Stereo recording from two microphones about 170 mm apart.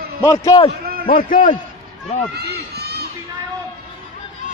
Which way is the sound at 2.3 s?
70° right (ahead or behind).